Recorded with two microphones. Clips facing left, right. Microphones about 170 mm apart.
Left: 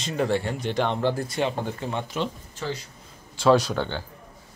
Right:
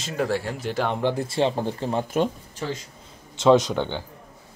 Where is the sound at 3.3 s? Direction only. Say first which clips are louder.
Right 2 dB; 20° right (ahead or behind).